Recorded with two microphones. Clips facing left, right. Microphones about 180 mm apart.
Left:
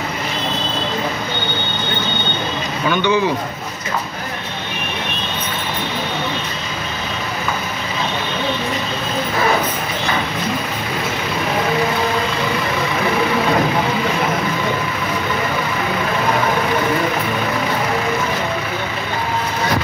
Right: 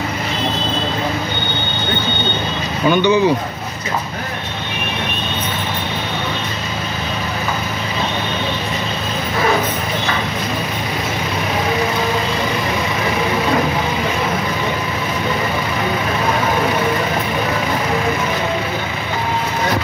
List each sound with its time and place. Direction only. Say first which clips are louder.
2.9 s speech: right 4 dB; 15° right (ahead or behind)